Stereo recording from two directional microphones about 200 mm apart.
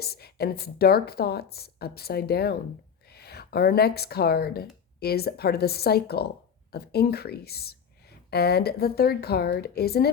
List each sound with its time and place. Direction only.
0.0 s speech: 50° left (ahead or behind)